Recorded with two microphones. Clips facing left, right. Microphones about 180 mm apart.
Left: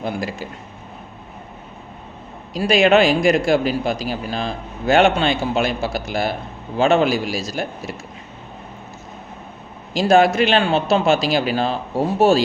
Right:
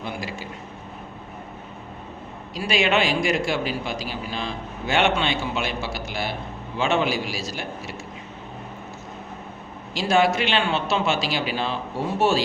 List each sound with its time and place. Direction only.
0.0 s a man's voice: 45° left (ahead or behind)
2.6 s a man's voice: 45° left (ahead or behind)
9.9 s a man's voice: 45° left (ahead or behind)